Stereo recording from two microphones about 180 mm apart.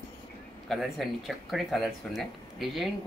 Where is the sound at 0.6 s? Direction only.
Centre (ahead or behind).